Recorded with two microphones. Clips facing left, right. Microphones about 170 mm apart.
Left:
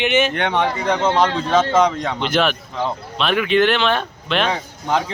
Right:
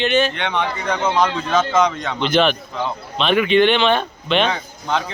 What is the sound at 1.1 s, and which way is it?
A man's voice, 30° left (ahead or behind).